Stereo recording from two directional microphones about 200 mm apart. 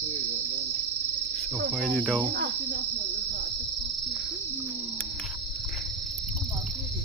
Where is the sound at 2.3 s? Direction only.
55° right (ahead or behind).